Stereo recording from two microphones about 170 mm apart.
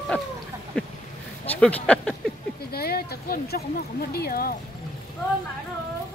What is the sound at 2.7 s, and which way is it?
Speech, 65° left (ahead or behind).